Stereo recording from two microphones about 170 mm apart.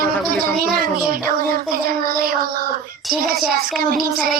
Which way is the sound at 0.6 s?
60° right (ahead or behind).